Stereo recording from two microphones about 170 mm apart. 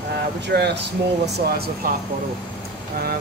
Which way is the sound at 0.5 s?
70° right (ahead or behind).